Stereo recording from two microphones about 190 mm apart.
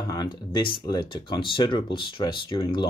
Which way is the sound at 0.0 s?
20° left (ahead or behind).